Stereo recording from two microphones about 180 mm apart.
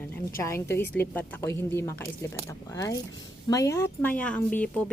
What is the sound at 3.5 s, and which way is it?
A woman's voice, 15° left (ahead or behind).